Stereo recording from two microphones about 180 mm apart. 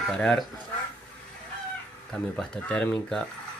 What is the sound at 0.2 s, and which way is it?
Speech, 5° left (ahead or behind).